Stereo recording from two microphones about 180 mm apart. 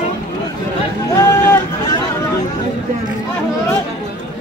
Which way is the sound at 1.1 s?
15° left (ahead or behind).